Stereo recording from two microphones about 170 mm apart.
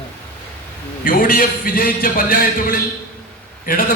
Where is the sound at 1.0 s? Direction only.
55° left (ahead or behind).